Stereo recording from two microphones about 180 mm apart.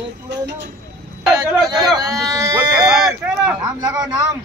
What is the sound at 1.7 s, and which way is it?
Speech, centre (ahead or behind).